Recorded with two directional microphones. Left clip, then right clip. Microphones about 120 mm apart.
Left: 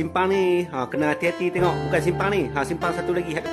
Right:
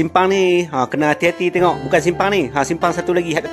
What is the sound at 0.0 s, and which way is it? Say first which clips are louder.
Speech: right 7 dB; 45° right (ahead or behind).